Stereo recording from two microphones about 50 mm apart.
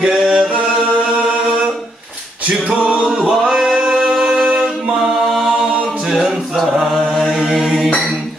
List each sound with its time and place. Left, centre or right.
0.0 s a capella: centre
2.7 s a capella: centre
3.1 s singing: centre
4.2 s a capella: centre
7.0 s mantra: centre